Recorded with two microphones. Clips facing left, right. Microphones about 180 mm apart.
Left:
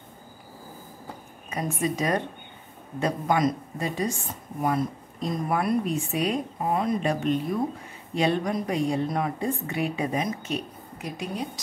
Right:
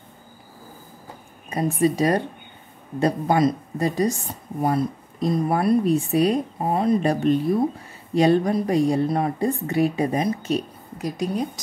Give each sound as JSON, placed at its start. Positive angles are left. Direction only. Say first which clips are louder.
{"t": 1.5, "sound": "speech", "louder": "right 7 dB", "side_deg": -35}